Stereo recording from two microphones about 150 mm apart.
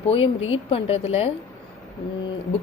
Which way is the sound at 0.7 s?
40° left (ahead or behind).